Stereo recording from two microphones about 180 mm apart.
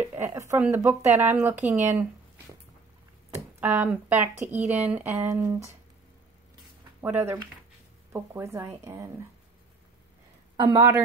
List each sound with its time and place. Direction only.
0.0 s speech: 15° right (ahead or behind)
3.6 s speech: 10° right (ahead or behind)
7.0 s speech: 10° right (ahead or behind)
10.5 s a sound: 25° right (ahead or behind)